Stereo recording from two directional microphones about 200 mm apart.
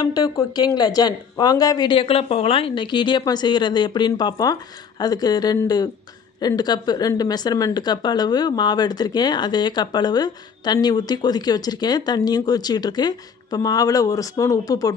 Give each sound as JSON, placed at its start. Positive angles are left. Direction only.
{"t": 0.0, "sound": "speech", "side_deg": 20}